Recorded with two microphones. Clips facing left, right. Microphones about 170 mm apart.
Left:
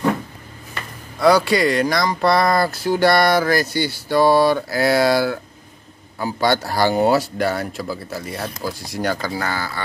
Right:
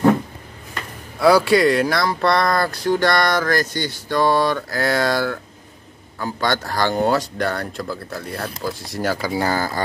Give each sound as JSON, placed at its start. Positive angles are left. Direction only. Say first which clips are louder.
{"t": 1.2, "sound": "speech", "louder": "right 1 dB", "side_deg": -5}
{"t": 9.5, "sound": "speech", "louder": "right 4 dB", "side_deg": -40}